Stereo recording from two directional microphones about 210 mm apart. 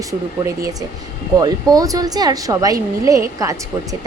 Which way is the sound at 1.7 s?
15° right (ahead or behind).